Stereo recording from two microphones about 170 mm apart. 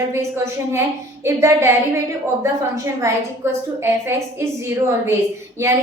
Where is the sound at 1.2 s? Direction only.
15° right (ahead or behind).